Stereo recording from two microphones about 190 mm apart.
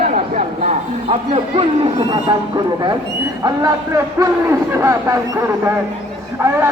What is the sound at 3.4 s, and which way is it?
A man's voice, 20° right (ahead or behind).